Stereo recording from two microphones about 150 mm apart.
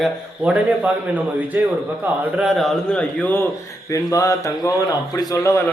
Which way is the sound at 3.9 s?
20° left (ahead or behind).